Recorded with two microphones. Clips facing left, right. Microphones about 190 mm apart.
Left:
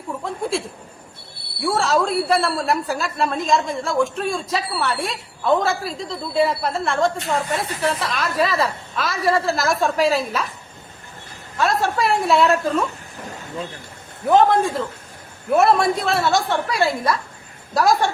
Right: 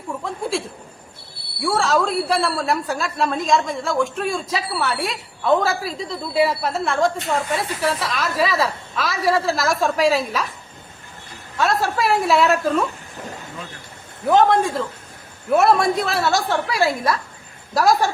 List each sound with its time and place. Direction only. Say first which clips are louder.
0.5 s a woman's voice: even; centre (ahead or behind)
11.5 s a woman's voice: even; centre (ahead or behind)
14.3 s a woman's voice: even; centre (ahead or behind)